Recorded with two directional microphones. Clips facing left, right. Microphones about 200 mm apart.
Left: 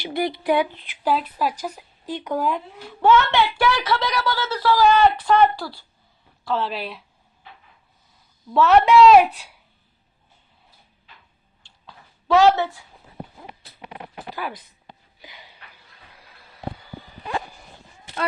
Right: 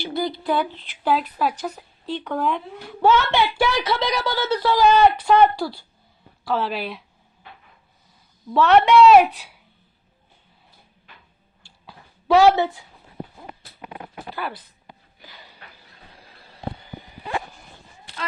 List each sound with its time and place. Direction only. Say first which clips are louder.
0.0 s speech: left 1 dB; 20° left (ahead or behind)
1.0 s speech: right 1 dB; centre (ahead or behind)
3.0 s speech: left 1 dB; 15° right (ahead or behind)
6.4 s speech: right 1 dB; 5° right (ahead or behind)
8.5 s speech: even; centre (ahead or behind)
11.6 s a sound: right 1 dB; 10° right (ahead or behind)
14.3 s speech: right 1 dB; 5° right (ahead or behind)
16.1 s a sound: right 2 dB; 30° right (ahead or behind)